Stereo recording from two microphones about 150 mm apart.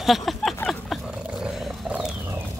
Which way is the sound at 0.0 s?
Centre (ahead or behind).